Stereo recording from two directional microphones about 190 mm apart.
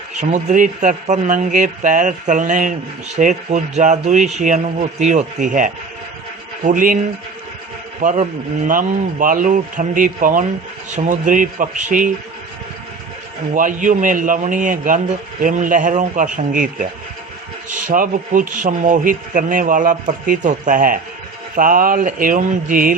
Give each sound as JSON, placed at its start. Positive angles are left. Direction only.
{"t": 0.2, "sound": "a man's voice", "side_deg": -40}
{"t": 8.6, "sound": "a man's voice", "side_deg": -45}
{"t": 13.5, "sound": "a man's voice", "side_deg": -45}